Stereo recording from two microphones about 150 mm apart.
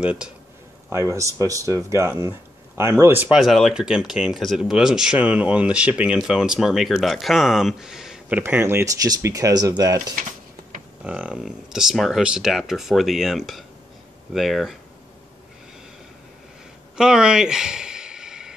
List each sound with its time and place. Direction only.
0.0 s speech: 5° right (ahead or behind)
0.8 s speech: 20° right (ahead or behind); by 8.4 s 5° right (ahead or behind)
8.4 s speech: 15° right (ahead or behind)
11.1 s speech: 5° right (ahead or behind)
16.9 s a sound: 5° right (ahead or behind)